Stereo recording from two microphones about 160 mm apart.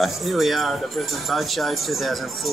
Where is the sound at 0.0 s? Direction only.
Centre (ahead or behind).